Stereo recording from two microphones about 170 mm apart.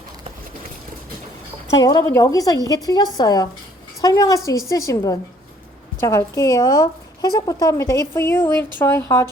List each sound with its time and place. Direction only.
1.8 s speech: 20° left (ahead or behind)